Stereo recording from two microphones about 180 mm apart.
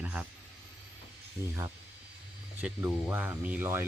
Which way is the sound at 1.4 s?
15° right (ahead or behind).